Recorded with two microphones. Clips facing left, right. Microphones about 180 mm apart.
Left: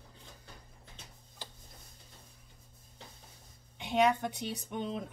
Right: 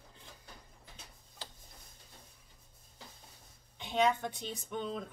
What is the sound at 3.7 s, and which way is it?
A woman's voice, 15° left (ahead or behind).